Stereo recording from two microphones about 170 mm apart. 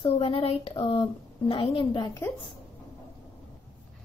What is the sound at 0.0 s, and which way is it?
Speech, 35° left (ahead or behind).